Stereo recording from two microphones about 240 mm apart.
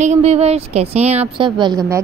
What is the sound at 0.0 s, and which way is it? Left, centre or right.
A woman's voice, right.